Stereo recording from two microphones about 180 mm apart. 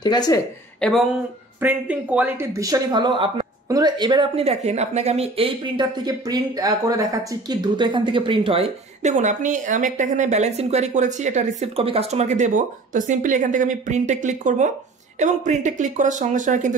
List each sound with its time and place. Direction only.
0.0 s speech: 20° left (ahead or behind)
0.7 s speech: 5° left (ahead or behind)
1.6 s speech: 10° right (ahead or behind); by 16.7 s 45° right (ahead or behind)